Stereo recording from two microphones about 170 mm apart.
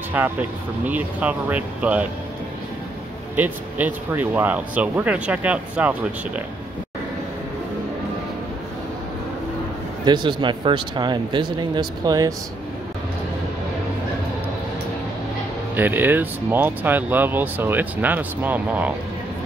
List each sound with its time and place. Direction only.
0.1 s speech: 10° right (ahead or behind)
3.3 s speech: 10° right (ahead or behind)
10.0 s speech: 25° right (ahead or behind)
15.7 s speech: 10° right (ahead or behind)